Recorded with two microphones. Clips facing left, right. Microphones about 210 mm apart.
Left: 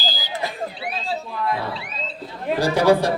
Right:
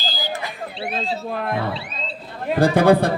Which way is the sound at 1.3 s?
60° right (ahead or behind).